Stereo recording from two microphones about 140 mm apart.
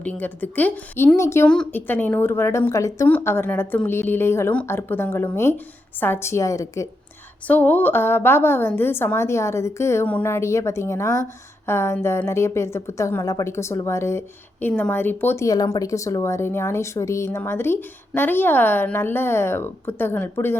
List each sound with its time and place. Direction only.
0.0 s a woman's voice: 10° left (ahead or behind)
7.4 s a woman's voice: 10° left (ahead or behind)